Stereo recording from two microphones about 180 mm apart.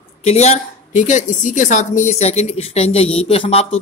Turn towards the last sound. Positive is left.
turn(degrees=35)  # may be behind; listen again after turning